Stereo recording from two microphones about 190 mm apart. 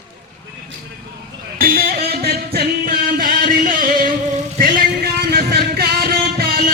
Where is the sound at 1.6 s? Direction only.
50° right (ahead or behind).